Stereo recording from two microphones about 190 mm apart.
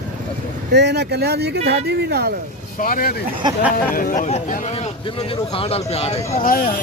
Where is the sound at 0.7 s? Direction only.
60° right (ahead or behind).